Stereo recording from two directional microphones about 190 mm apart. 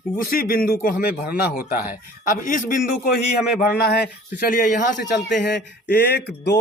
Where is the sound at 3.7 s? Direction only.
55° left (ahead or behind).